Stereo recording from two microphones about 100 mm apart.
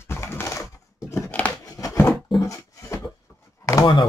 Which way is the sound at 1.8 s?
25° left (ahead or behind).